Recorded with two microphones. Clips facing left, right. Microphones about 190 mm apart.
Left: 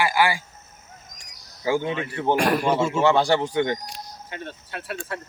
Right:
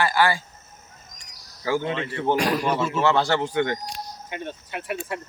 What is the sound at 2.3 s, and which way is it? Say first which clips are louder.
Speech: left 2 dB; 55° left (ahead or behind).